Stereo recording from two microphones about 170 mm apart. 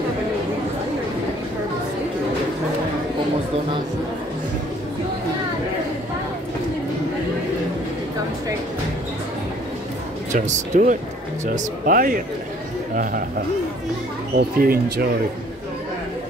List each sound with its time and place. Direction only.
10.3 s speech: 45° right (ahead or behind)
14.3 s speech: 60° right (ahead or behind)